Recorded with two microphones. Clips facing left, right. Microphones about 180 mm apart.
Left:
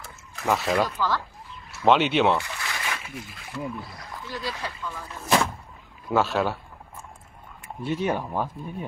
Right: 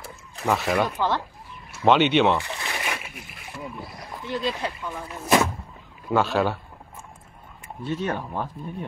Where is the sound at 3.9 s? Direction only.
20° right (ahead or behind).